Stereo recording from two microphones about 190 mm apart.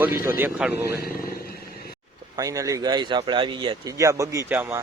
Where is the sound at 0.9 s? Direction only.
55° left (ahead or behind).